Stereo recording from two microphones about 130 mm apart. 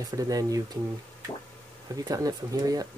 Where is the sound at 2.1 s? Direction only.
25° right (ahead or behind).